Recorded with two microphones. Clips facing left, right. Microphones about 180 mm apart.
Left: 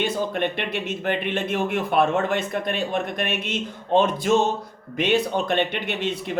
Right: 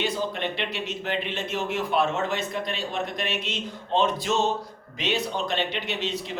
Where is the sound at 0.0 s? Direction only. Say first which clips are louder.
Left 4 dB; 55° left (ahead or behind).